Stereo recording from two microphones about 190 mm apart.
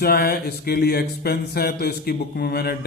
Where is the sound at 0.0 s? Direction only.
55° left (ahead or behind).